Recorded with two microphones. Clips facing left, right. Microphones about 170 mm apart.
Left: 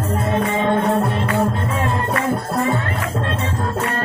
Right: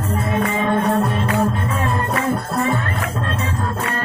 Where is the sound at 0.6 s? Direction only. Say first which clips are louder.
Even; 25° left (ahead or behind).